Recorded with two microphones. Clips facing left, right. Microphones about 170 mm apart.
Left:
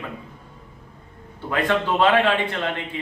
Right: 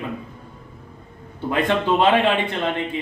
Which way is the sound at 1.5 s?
20° right (ahead or behind).